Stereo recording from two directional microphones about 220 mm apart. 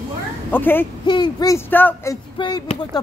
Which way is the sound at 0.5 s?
10° left (ahead or behind).